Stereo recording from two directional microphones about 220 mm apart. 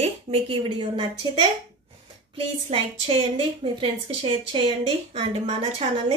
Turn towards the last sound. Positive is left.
turn(degrees=-25)  # may be behind; listen again after turning